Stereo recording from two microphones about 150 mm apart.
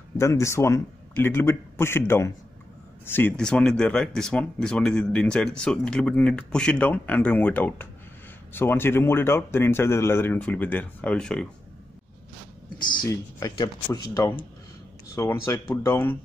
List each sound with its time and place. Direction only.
0.2 s speech: 20° left (ahead or behind)
13.0 s speech: 25° left (ahead or behind)